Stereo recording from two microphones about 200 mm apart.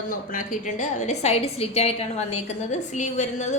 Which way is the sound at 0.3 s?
35° left (ahead or behind).